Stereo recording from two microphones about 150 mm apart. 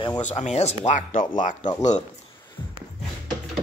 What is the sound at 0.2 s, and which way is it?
Speech, 50° left (ahead or behind).